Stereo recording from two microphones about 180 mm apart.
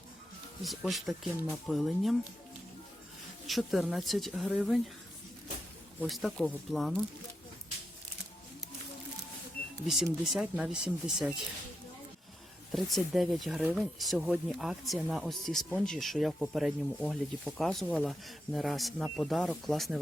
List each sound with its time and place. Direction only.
0.6 s speech: centre (ahead or behind)
3.4 s speech: centre (ahead or behind)
6.0 s speech: centre (ahead or behind)
9.8 s speech: centre (ahead or behind)
12.7 s speech: centre (ahead or behind)